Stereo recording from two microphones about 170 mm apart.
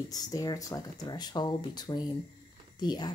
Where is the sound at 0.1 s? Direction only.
20° left (ahead or behind).